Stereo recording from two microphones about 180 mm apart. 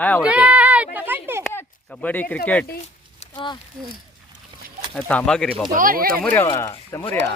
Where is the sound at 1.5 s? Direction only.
10° left (ahead or behind).